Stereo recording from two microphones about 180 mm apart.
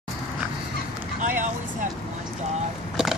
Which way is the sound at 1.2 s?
45° right (ahead or behind).